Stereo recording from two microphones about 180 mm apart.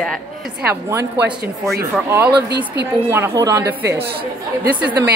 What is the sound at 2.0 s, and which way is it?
A woman's voice, 15° right (ahead or behind).